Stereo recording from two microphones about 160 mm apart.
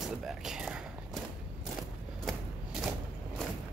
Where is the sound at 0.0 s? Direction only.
Centre (ahead or behind).